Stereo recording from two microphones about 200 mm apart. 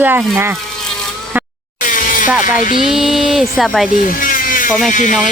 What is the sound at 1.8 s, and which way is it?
Music, 40° left (ahead or behind).